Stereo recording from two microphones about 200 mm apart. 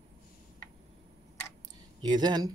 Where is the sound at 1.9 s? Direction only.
20° right (ahead or behind).